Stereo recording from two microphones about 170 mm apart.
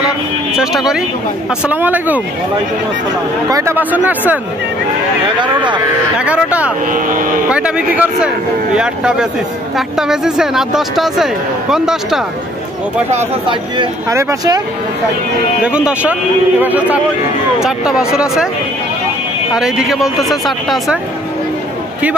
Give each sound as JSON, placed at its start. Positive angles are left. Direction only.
{"t": 0.6, "sound": "speech", "side_deg": -5}
{"t": 3.4, "sound": "speech", "side_deg": -20}
{"t": 5.4, "sound": "speech", "side_deg": -25}
{"t": 6.1, "sound": "speech", "side_deg": -10}
{"t": 14.1, "sound": "speech", "side_deg": -20}
{"t": 15.6, "sound": "speech", "side_deg": -5}
{"t": 19.5, "sound": "speech", "side_deg": -5}